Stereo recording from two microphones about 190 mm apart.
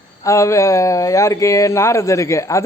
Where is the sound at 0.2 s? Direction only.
15° left (ahead or behind).